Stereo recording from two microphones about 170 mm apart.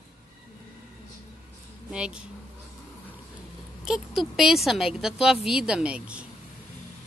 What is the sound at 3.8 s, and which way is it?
Speech, centre (ahead or behind).